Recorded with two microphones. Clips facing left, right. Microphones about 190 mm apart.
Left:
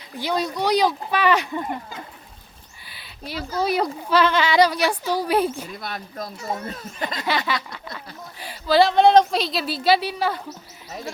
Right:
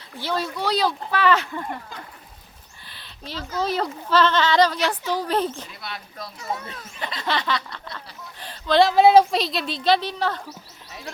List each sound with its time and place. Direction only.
0.1 s speech: 15° left (ahead or behind)
2.8 s a sound: 10° left (ahead or behind)
3.6 s speech: 10° left (ahead or behind)
5.8 s speech: 45° left (ahead or behind)
7.2 s speech: 10° left (ahead or behind)